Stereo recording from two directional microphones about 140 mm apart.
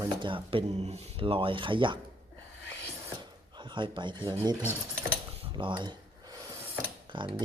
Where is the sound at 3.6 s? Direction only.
35° right (ahead or behind).